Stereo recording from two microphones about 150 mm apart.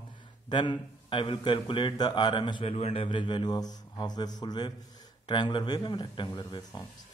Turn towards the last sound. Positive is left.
turn(degrees=30)  # may be behind; listen again after turning